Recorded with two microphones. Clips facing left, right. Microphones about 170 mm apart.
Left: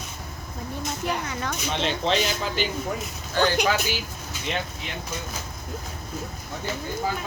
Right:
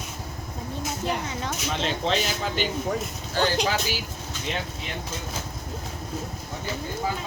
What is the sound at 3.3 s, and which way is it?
Speech, 30° right (ahead or behind).